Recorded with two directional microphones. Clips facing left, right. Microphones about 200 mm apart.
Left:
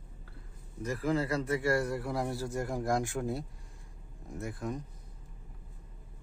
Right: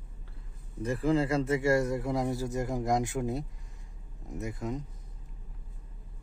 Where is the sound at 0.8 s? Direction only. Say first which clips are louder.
Right 4 dB; 30° right (ahead or behind).